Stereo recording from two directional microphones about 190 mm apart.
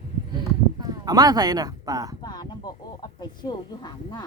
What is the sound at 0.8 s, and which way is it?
Speech, 20° right (ahead or behind).